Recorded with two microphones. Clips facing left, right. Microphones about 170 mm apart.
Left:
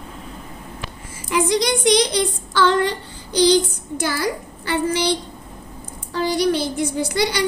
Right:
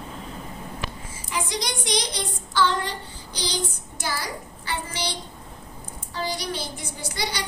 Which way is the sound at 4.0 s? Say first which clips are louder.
Left 8 dB; 65° left (ahead or behind).